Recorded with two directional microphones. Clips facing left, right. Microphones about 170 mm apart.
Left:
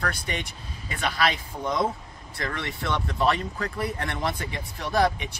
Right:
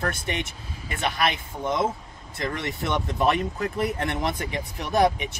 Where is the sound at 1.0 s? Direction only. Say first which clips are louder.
Even; 20° right (ahead or behind).